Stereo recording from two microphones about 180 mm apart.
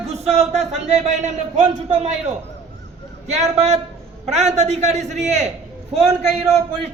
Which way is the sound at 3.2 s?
40° right (ahead or behind).